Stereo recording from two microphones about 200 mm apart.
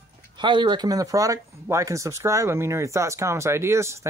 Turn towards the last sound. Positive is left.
turn(degrees=-15)  # may be behind; listen again after turning